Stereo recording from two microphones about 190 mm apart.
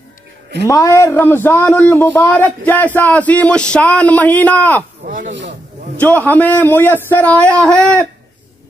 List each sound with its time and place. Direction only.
0.7 s speech: 15° left (ahead or behind)
5.0 s a sound: 45° right (ahead or behind)
6.1 s speech: 10° left (ahead or behind)